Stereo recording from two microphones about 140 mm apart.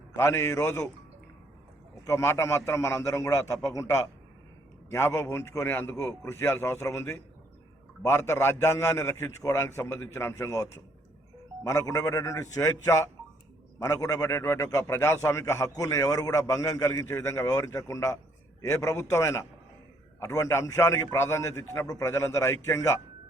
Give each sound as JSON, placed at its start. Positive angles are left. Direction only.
{"t": 0.2, "sound": "a man's voice", "side_deg": 20}
{"t": 2.0, "sound": "a man's voice", "side_deg": 20}